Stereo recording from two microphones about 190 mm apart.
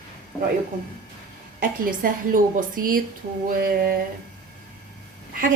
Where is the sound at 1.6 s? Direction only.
45° right (ahead or behind).